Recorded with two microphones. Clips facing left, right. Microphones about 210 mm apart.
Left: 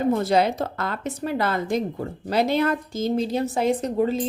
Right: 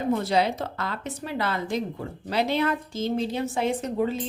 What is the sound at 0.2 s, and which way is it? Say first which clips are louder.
A woman's voice: left 3 dB; 45° left (ahead or behind).